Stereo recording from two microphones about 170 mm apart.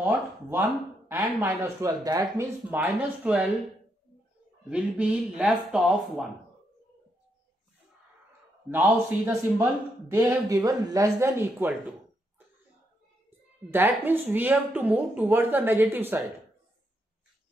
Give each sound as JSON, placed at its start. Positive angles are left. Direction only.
{"t": 0.0, "sound": "speech", "side_deg": -10}
{"t": 2.7, "sound": "a woman's voice", "side_deg": -5}
{"t": 4.6, "sound": "a woman's voice", "side_deg": -5}
{"t": 8.6, "sound": "speech", "side_deg": -15}
{"t": 13.7, "sound": "a woman's voice", "side_deg": -10}